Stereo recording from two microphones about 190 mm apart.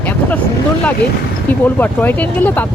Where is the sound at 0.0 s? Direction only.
10° left (ahead or behind).